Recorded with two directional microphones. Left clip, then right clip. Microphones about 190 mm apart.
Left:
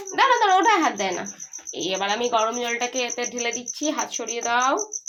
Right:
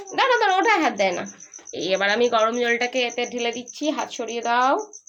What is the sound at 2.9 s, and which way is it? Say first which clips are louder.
Speech: right 3 dB; 25° right (ahead or behind).